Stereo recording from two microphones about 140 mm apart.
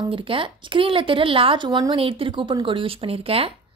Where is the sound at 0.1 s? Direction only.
40° right (ahead or behind).